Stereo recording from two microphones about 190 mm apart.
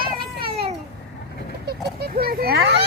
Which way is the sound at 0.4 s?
30° right (ahead or behind).